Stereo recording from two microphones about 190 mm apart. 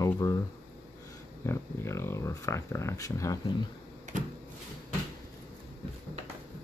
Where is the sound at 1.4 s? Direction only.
15° left (ahead or behind).